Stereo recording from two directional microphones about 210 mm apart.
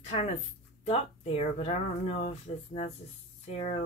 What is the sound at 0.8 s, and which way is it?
Speech, 30° left (ahead or behind).